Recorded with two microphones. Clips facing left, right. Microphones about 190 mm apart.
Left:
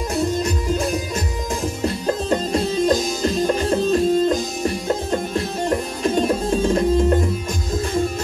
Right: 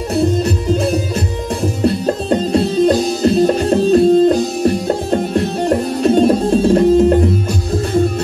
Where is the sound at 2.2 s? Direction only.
35° right (ahead or behind).